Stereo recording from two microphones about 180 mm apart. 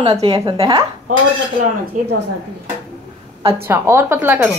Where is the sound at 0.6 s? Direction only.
20° right (ahead or behind).